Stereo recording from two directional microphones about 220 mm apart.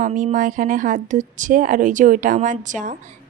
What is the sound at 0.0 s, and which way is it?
A woman's voice, 35° right (ahead or behind).